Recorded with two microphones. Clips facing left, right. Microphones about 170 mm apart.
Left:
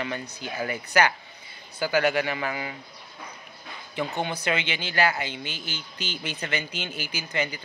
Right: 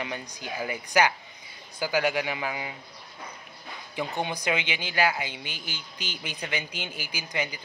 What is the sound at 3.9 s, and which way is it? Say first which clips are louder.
Speech: left 2 dB; 15° right (ahead or behind).